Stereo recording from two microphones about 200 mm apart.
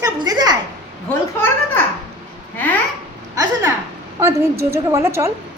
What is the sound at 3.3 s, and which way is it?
Speech, 20° right (ahead or behind).